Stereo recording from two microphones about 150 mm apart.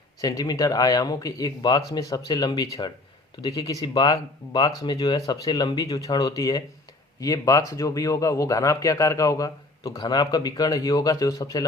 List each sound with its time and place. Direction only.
0.2 s speech: 25° left (ahead or behind)